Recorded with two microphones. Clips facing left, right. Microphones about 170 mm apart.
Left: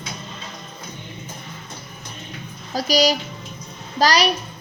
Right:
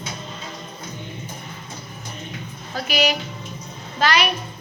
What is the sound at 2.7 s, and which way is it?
A woman's voice, 35° left (ahead or behind).